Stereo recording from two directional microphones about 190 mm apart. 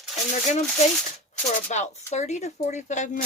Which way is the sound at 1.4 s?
35° left (ahead or behind).